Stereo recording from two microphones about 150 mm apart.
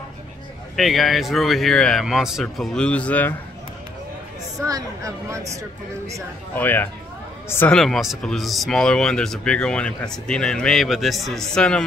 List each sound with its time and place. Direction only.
0.7 s speech: centre (ahead or behind)
4.6 s speech: 20° right (ahead or behind)
6.5 s speech: 10° left (ahead or behind)
7.7 s speech: centre (ahead or behind)